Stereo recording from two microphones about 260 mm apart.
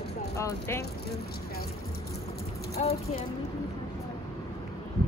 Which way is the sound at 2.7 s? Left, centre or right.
Left.